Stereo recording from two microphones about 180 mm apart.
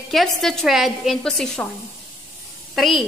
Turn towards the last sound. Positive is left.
turn(degrees=0)  # may be behind; listen again after turning